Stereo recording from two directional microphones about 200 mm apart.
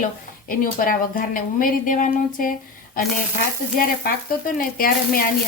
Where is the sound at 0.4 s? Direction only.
45° left (ahead or behind).